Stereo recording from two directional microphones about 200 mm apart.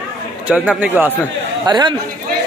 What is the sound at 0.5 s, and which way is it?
Speech, 10° right (ahead or behind).